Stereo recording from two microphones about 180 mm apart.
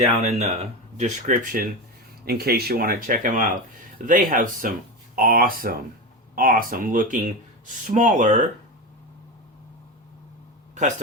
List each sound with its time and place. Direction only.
0.0 s speech: 35° right (ahead or behind)
2.2 s speech: 60° right (ahead or behind)